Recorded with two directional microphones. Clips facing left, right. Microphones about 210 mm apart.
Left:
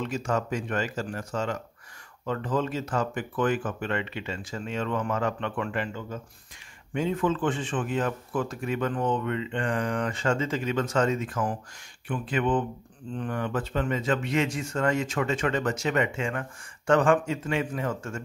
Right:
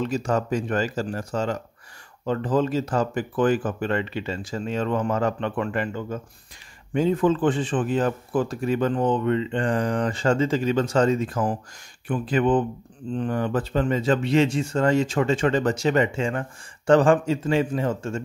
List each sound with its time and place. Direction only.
0.0 s speech: 35° right (ahead or behind)
6.9 s speech: 35° right (ahead or behind)